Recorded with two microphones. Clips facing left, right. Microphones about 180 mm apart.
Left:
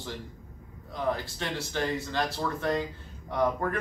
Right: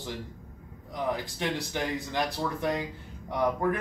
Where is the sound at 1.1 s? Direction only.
15° right (ahead or behind).